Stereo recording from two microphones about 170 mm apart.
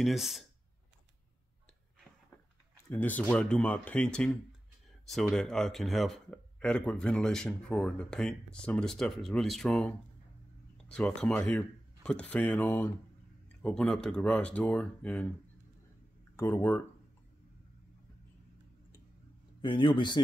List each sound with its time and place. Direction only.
0.0 s speech: centre (ahead or behind)
2.9 s speech: 10° left (ahead or behind)
16.3 s speech: 15° left (ahead or behind)
19.6 s a man's voice: 30° left (ahead or behind)